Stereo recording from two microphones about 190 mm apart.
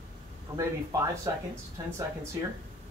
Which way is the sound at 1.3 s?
15° right (ahead or behind).